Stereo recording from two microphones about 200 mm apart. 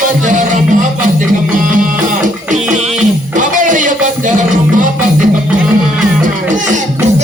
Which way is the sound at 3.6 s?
40° right (ahead or behind).